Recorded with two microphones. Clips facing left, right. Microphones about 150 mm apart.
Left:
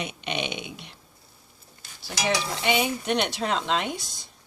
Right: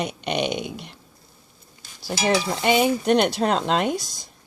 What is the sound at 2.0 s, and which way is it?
Speech, 45° right (ahead or behind).